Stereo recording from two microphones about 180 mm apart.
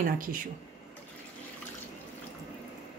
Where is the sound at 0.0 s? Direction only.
50° right (ahead or behind).